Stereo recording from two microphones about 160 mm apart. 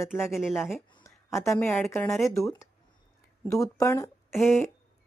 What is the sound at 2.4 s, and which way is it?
Speech, 20° left (ahead or behind).